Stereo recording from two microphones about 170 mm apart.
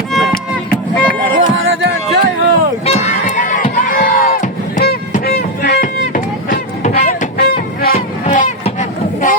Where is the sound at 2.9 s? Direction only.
40° left (ahead or behind).